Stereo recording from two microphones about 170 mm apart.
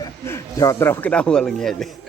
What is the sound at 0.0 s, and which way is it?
Speech, 15° left (ahead or behind).